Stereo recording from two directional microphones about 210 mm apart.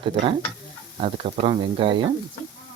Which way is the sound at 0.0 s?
25° right (ahead or behind).